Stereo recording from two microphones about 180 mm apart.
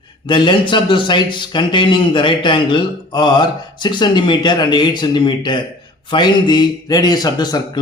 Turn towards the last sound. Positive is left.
turn(degrees=25)  # may be behind; listen again after turning